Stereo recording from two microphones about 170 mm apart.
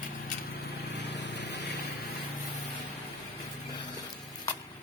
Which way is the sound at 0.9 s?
90° left.